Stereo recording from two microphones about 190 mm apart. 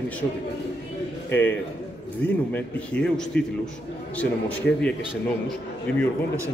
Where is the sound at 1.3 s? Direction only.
10° left (ahead or behind).